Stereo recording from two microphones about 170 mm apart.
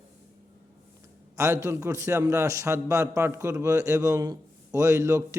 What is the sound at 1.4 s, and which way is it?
A man's voice, 15° right (ahead or behind).